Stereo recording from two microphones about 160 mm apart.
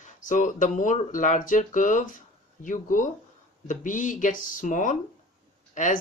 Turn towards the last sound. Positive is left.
turn(degrees=50)  # may be behind; listen again after turning